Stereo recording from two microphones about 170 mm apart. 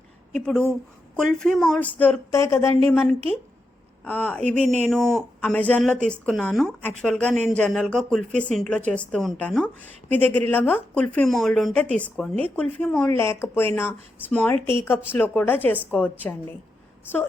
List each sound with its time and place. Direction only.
0.3 s speech: 5° left (ahead or behind)
4.6 s speech: 40° right (ahead or behind)
4.9 s speech: centre (ahead or behind)